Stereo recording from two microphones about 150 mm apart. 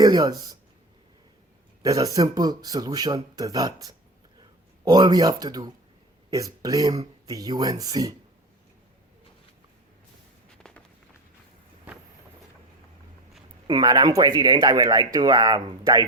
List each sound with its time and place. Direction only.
0.0 s speech: 25° right (ahead or behind)
1.8 s speech: 25° right (ahead or behind)
10.6 s walk: 5° left (ahead or behind)
13.7 s speech: 25° right (ahead or behind)